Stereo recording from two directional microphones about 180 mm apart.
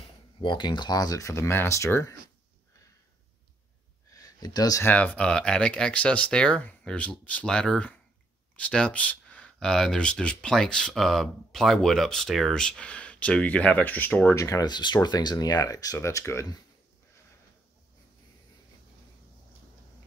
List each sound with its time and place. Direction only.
0.4 s speech: 25° left (ahead or behind)
4.1 s speech: 20° left (ahead or behind)